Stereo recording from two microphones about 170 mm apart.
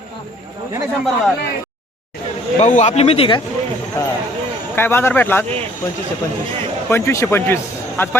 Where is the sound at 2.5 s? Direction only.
45° left (ahead or behind).